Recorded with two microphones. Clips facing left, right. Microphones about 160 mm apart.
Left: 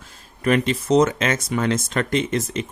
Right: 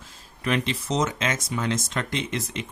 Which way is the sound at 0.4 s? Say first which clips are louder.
Left 7 dB; 50° left (ahead or behind).